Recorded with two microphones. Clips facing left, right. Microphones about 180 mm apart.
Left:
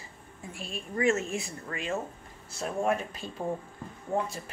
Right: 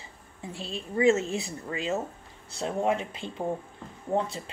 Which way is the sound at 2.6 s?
20° right (ahead or behind).